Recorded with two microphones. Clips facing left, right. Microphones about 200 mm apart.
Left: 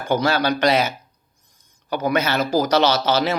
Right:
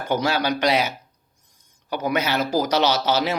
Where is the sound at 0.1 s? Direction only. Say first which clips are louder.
Left 3 dB; 15° right (ahead or behind).